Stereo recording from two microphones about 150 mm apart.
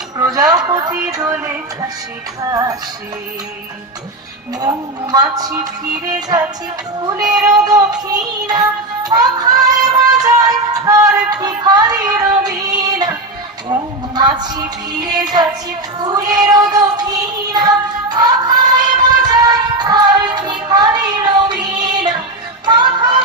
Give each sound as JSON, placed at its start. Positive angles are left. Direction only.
{"t": 0.2, "sound": "a sound", "side_deg": -25}
{"t": 1.1, "sound": "music", "side_deg": -25}
{"t": 2.4, "sound": "music", "side_deg": -25}
{"t": 5.1, "sound": "music", "side_deg": -25}
{"t": 9.0, "sound": "a sound", "side_deg": -25}
{"t": 13.7, "sound": "music", "side_deg": -30}
{"t": 19.2, "sound": "child singing", "side_deg": -25}
{"t": 22.6, "sound": "music", "side_deg": -30}